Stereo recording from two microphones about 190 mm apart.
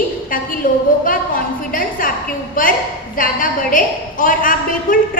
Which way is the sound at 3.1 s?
45° left (ahead or behind).